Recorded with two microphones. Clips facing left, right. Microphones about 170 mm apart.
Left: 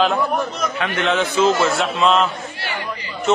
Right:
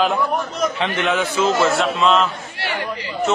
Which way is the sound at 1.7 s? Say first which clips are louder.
Even; centre (ahead or behind).